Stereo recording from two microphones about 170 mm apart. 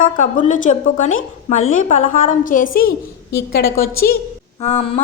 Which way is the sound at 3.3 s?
65° left (ahead or behind).